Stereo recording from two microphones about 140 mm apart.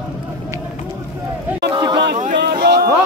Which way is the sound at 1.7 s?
35° right (ahead or behind).